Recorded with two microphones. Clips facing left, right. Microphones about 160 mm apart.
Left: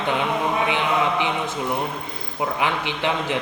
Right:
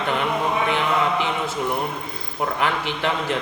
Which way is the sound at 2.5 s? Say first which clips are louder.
Right 1 dB; 15° left (ahead or behind).